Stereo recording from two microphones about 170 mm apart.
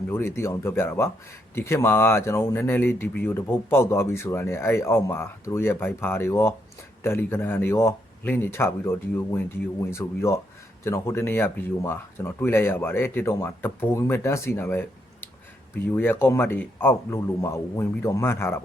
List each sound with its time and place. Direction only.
0.1 s speech: 15° left (ahead or behind)